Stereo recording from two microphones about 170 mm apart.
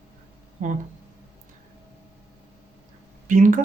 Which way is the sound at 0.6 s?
45° right (ahead or behind).